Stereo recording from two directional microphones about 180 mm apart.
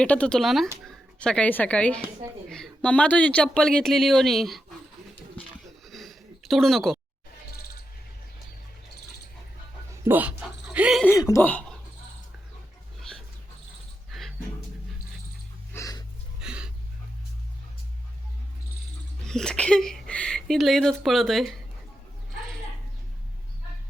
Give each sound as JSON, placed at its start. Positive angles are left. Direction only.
{"t": 0.0, "sound": "a woman's voice", "side_deg": 5}
{"t": 5.8, "sound": "a sound", "side_deg": 0}
{"t": 9.9, "sound": "speech", "side_deg": -15}
{"t": 11.0, "sound": "speech", "side_deg": 15}
{"t": 13.0, "sound": "dog", "side_deg": 0}
{"t": 14.1, "sound": "music", "side_deg": 0}
{"t": 15.7, "sound": "a sound", "side_deg": 20}
{"t": 16.4, "sound": "a sound", "side_deg": -5}
{"t": 19.2, "sound": "speech", "side_deg": 5}